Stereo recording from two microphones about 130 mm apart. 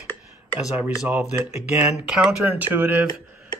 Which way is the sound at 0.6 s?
10° right (ahead or behind).